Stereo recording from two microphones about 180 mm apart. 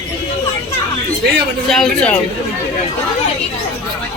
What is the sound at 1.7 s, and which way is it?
Speech, centre (ahead or behind).